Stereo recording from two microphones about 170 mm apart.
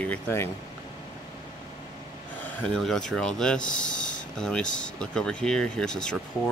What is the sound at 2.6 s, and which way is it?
Speech, 5° left (ahead or behind).